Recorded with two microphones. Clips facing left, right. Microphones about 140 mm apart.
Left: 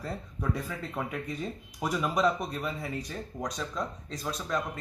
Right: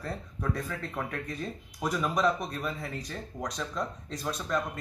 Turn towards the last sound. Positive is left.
turn(degrees=0)  # may be behind; listen again after turning